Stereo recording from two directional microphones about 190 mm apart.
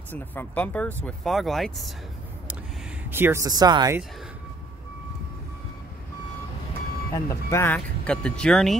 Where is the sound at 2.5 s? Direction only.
10° right (ahead or behind).